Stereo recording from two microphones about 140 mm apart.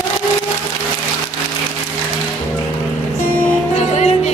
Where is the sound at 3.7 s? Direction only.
50° left (ahead or behind).